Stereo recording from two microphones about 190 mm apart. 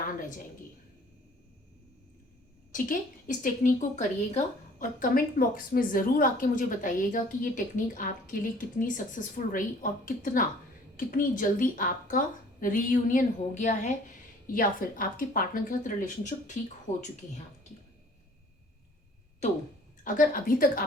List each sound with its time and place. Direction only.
0.2 s a woman's voice: 45° left (ahead or behind)
2.7 s a woman's voice: 45° left (ahead or behind)
20.1 s a woman's voice: 45° left (ahead or behind)